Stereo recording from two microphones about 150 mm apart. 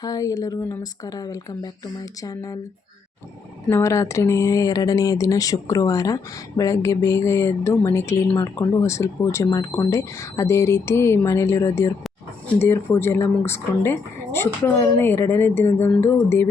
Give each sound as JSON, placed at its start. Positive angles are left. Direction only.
{"t": 0.0, "sound": "speech", "side_deg": 25}
{"t": 3.7, "sound": "speech", "side_deg": 20}